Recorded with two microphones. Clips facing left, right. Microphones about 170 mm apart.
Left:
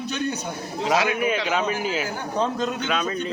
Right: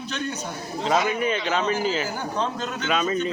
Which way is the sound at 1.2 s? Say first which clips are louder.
Left 1 dB; 10° left (ahead or behind).